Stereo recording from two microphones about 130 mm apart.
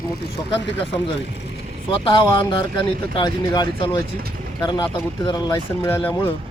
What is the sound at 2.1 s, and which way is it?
A man's voice, 40° left (ahead or behind).